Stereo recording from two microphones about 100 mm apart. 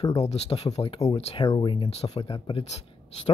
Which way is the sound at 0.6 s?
80° left.